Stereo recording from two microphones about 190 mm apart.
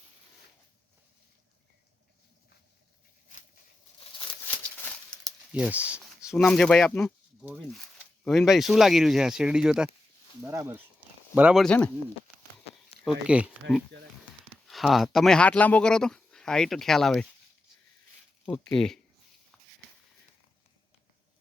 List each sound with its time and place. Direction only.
4.0 s a sound: 30° left (ahead or behind)
4.8 s a sound: 5° left (ahead or behind)
5.5 s speech: 5° right (ahead or behind)
6.3 s speech: 5° left (ahead or behind)
11.6 s speech: 5° left (ahead or behind)
13.1 s speech: 5° right (ahead or behind)
18.4 s speech: 5° left (ahead or behind)